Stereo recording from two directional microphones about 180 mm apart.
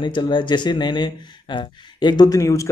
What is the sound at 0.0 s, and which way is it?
Speech, 25° left (ahead or behind).